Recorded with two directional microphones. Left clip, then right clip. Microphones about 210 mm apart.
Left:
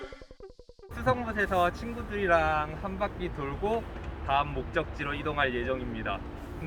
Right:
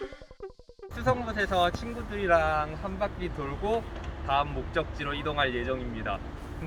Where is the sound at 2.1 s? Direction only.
10° right (ahead or behind).